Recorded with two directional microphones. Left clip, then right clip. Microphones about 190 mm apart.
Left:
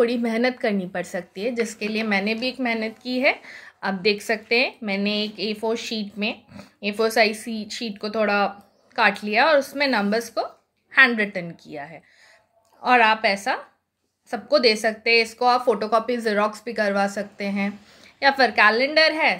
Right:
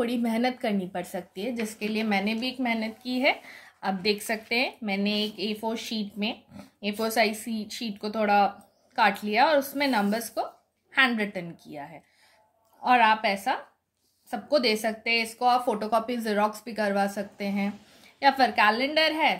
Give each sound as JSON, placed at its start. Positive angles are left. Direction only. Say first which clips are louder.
{"t": 0.0, "sound": "a woman's voice", "louder": "left 6 dB", "side_deg": 20}